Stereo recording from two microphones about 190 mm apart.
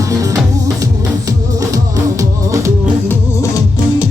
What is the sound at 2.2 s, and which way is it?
Music, 15° right (ahead or behind).